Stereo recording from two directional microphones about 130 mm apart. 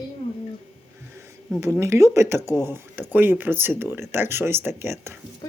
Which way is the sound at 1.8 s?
20° right (ahead or behind).